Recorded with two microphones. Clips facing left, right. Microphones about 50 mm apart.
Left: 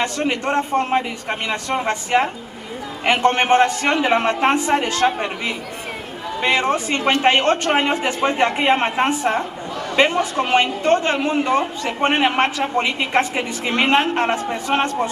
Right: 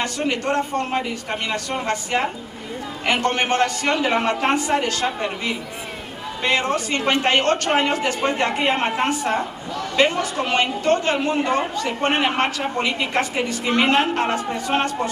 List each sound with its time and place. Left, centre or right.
0.3 s a man's voice: centre
6.4 s a man's voice: centre
7.0 s speech: centre
7.2 s a man's voice: centre